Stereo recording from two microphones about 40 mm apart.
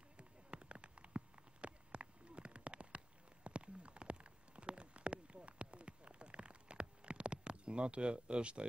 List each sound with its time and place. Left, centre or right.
0.2 s rain on surface: right
3.4 s clip-clop: right